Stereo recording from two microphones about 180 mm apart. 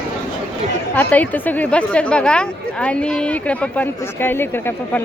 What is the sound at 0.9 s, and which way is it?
A woman's voice, 10° left (ahead or behind).